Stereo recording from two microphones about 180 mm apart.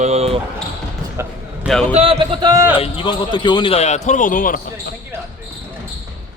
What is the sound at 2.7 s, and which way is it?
Speech, 30° left (ahead or behind).